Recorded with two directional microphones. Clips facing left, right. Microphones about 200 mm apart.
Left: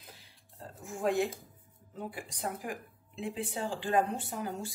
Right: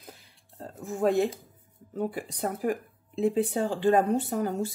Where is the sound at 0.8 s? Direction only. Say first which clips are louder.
Right 6 dB; 40° right (ahead or behind).